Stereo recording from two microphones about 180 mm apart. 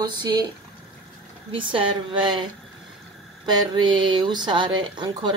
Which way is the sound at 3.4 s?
25° right (ahead or behind).